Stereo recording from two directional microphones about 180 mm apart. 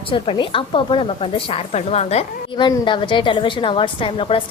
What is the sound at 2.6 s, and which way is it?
A woman's voice, 25° left (ahead or behind).